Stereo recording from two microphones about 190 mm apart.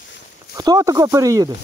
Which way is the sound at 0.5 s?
20° right (ahead or behind).